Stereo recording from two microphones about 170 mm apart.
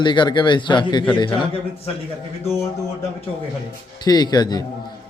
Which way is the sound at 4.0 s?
25° left (ahead or behind).